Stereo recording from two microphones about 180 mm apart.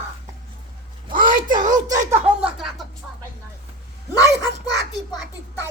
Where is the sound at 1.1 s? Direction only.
50° right (ahead or behind).